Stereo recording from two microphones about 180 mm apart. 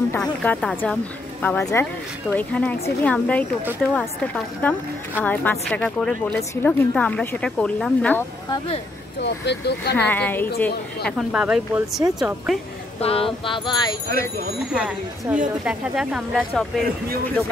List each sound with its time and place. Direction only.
0.1 s speech: 5° left (ahead or behind)
8.5 s speech: 30° left (ahead or behind)
9.2 s speech: 70° left (ahead or behind)
9.9 s speech: 10° left (ahead or behind)
11.1 s speech: centre (ahead or behind)
13.0 s a sound: 30° left (ahead or behind)
14.7 s speech: 5° right (ahead or behind)